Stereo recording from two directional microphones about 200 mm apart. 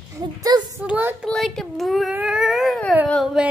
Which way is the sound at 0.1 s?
20° right (ahead or behind).